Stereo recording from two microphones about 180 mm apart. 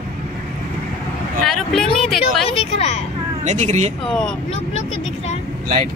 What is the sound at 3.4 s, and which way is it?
Speech, 40° right (ahead or behind).